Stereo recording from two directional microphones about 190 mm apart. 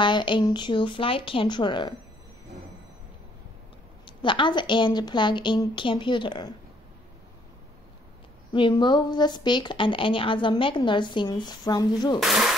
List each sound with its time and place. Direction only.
0.0 s a woman's voice: 25° left (ahead or behind)
4.0 s a woman's voice: 25° left (ahead or behind)
8.5 s a woman's voice: 25° left (ahead or behind)
12.2 s speech: centre (ahead or behind)